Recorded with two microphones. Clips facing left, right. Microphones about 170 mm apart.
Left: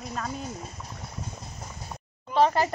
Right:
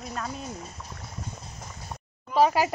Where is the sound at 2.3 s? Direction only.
5° right (ahead or behind).